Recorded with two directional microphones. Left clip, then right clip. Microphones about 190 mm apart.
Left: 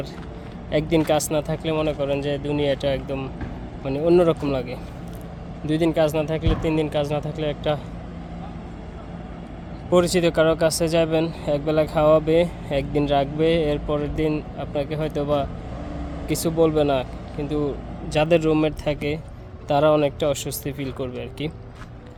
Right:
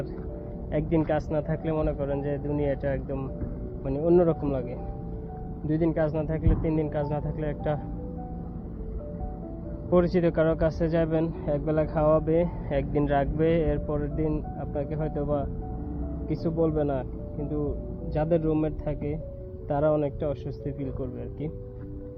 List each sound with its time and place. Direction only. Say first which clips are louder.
0.7 s speech: left 6 dB; 40° left (ahead or behind)
9.9 s speech: left 5 dB; 25° left (ahead or behind)
18.1 s speech: left 7 dB; 30° left (ahead or behind)